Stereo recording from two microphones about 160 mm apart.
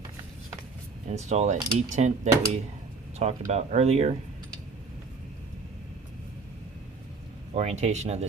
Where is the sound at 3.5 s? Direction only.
40° right (ahead or behind).